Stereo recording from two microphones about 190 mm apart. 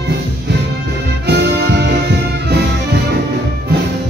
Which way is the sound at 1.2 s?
60° right (ahead or behind).